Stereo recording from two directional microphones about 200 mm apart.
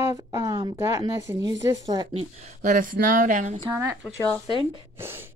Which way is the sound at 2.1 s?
35° right (ahead or behind).